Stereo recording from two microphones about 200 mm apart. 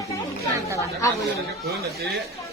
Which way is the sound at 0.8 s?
15° left (ahead or behind).